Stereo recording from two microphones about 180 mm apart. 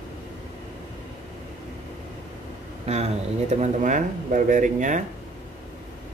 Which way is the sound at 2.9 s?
35° right (ahead or behind).